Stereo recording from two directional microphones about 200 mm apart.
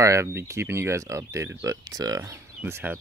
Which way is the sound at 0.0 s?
15° right (ahead or behind).